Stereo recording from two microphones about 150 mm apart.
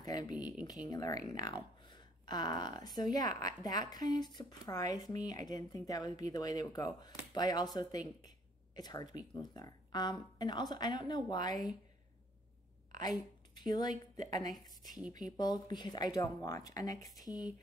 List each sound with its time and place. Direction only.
0.0 s speech: 25° left (ahead or behind)
13.0 s speech: 30° left (ahead or behind)